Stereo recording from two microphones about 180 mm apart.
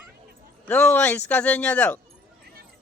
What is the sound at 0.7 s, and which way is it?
Speech, 10° left (ahead or behind).